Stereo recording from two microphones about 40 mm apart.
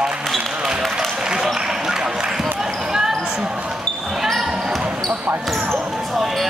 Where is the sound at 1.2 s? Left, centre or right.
Centre.